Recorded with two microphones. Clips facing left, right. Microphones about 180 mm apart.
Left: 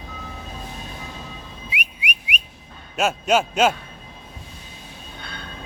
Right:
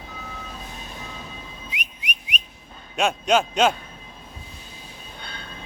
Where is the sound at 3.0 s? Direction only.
5° left (ahead or behind).